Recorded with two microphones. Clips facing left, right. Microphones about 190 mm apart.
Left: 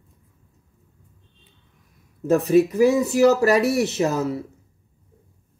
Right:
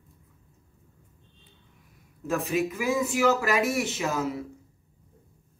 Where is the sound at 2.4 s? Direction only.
40° left (ahead or behind).